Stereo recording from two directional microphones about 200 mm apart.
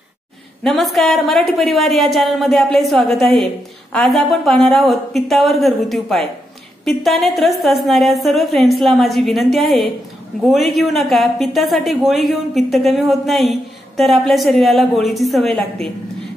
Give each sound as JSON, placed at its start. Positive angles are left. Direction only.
{"t": 0.7, "sound": "a woman's voice", "side_deg": 0}